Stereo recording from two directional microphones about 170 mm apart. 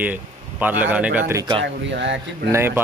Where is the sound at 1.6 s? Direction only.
90° right.